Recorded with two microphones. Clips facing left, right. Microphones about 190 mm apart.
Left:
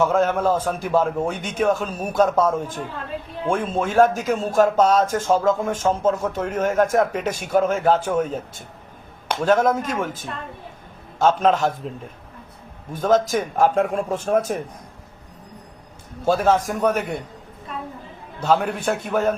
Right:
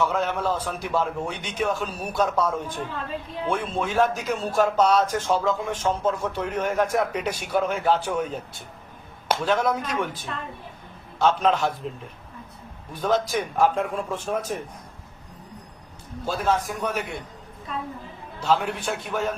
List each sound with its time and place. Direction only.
0.0 s a man's voice: 45° left (ahead or behind)
12.9 s a man's voice: 45° left (ahead or behind)
16.2 s a man's voice: 50° left (ahead or behind)
18.4 s a man's voice: 50° left (ahead or behind)